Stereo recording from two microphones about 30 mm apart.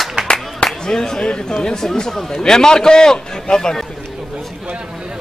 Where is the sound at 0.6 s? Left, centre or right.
Left.